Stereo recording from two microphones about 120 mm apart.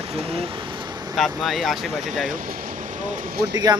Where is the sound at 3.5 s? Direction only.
35° right (ahead or behind).